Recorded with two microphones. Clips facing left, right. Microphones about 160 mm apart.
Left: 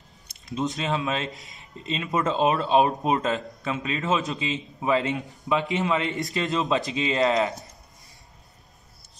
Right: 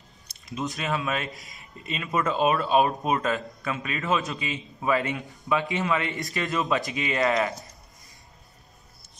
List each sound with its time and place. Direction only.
0.6 s speech: 25° left (ahead or behind)